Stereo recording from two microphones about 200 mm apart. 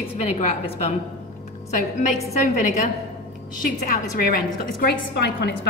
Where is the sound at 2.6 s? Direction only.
40° left (ahead or behind).